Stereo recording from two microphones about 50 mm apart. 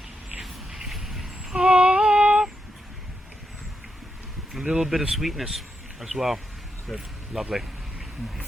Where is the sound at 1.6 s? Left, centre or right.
Right.